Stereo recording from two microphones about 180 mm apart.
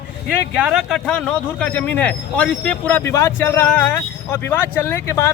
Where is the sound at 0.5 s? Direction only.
5° right (ahead or behind).